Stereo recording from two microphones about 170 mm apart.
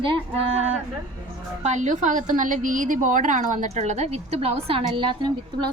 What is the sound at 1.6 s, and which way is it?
A woman's voice, 45° right (ahead or behind).